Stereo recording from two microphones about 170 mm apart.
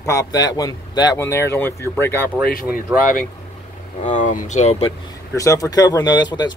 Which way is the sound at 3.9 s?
45° left (ahead or behind).